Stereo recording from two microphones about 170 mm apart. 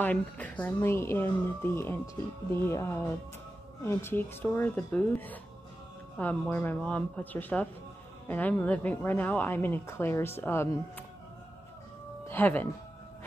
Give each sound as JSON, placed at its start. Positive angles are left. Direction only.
{"t": 0.0, "sound": "a woman's voice", "side_deg": 10}
{"t": 12.3, "sound": "a woman's voice", "side_deg": 10}